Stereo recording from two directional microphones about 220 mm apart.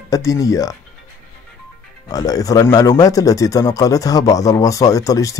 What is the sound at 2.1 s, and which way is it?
Speech, 15° left (ahead or behind).